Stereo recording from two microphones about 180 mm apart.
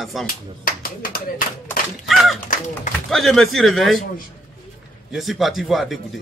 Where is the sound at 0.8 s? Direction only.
55° left (ahead or behind).